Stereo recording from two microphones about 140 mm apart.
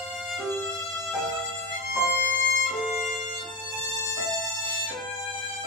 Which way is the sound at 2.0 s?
90° right.